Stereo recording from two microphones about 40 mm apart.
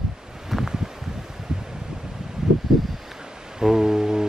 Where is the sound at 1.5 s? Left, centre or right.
Centre.